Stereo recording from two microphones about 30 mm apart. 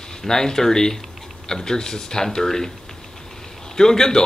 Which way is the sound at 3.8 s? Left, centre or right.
Centre.